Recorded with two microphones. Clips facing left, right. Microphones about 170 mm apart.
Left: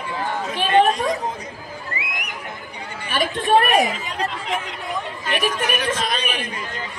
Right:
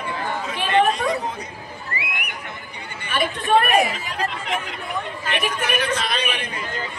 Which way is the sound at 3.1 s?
40° left (ahead or behind).